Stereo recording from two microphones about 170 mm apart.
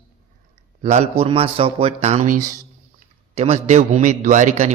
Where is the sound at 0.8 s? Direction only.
40° right (ahead or behind).